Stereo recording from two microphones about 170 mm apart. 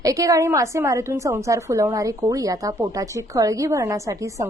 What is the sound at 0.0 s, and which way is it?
A woman's voice, 20° right (ahead or behind).